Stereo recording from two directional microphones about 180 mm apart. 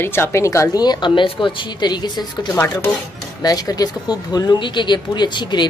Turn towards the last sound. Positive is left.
turn(degrees=25)  # may be behind; listen again after turning